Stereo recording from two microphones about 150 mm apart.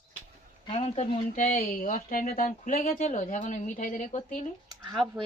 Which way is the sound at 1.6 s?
65° left (ahead or behind).